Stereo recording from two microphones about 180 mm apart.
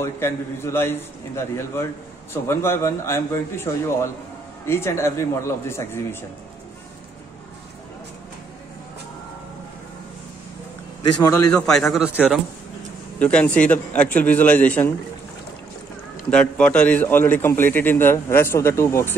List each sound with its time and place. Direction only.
0.0 s a man's voice: 15° left (ahead or behind)
11.1 s a man's voice: 20° left (ahead or behind)
11.5 s a man's voice: 5° left (ahead or behind)
16.3 s a man's voice: 5° left (ahead or behind)